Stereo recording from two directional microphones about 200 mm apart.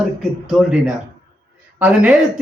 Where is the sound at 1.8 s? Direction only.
5° right (ahead or behind).